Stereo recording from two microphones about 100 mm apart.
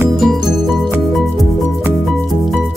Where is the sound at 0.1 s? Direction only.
Centre (ahead or behind).